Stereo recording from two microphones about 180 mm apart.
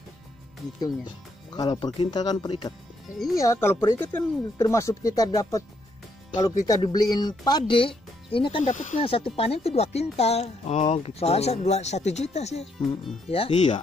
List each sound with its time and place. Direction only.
1.5 s speech: 25° left (ahead or behind)
3.3 s speech: 15° left (ahead or behind)
8.7 s speech: 45° left (ahead or behind)
9.0 s speech: 30° left (ahead or behind)